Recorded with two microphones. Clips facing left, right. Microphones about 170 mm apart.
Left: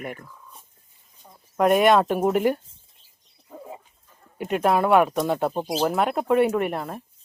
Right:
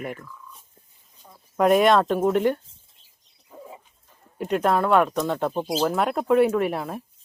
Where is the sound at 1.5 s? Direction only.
Centre (ahead or behind).